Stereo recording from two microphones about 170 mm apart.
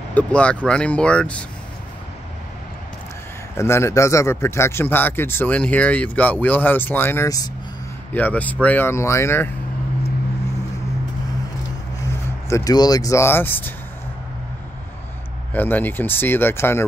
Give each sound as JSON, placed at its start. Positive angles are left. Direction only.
{"t": 0.1, "sound": "a man's voice", "side_deg": 5}
{"t": 3.5, "sound": "a man's voice", "side_deg": 15}
{"t": 8.1, "sound": "a man's voice", "side_deg": 10}
{"t": 12.4, "sound": "a man's voice", "side_deg": 20}
{"t": 15.5, "sound": "a man's voice", "side_deg": 10}